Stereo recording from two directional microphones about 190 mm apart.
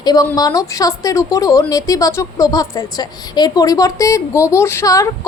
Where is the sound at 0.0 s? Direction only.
20° left (ahead or behind).